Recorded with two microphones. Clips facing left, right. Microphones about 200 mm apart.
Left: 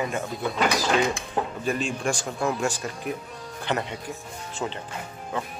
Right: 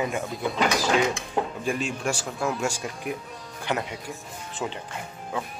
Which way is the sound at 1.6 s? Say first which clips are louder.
Left 1 dB; 5° right (ahead or behind).